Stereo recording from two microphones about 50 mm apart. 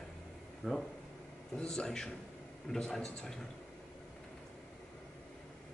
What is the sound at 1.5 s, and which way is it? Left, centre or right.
Speech, centre.